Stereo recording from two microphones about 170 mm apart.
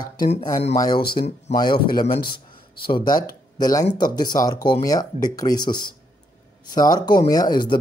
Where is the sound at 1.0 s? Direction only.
65° left (ahead or behind).